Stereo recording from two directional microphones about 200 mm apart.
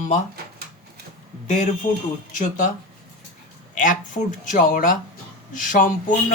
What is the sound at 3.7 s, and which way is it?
A man's voice, 40° left (ahead or behind).